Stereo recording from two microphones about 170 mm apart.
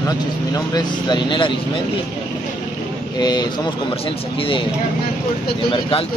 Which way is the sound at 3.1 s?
25° left (ahead or behind).